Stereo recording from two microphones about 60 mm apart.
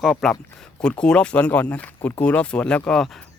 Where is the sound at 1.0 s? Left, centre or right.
Centre.